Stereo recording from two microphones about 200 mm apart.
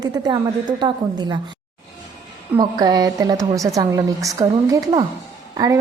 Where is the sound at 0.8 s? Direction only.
20° right (ahead or behind).